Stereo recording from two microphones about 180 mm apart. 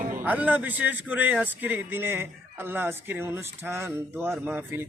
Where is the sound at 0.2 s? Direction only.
10° right (ahead or behind).